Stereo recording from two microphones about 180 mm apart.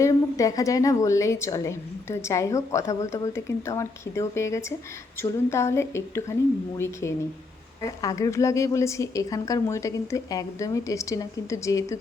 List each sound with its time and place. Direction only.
0.0 s a woman's voice: 15° left (ahead or behind)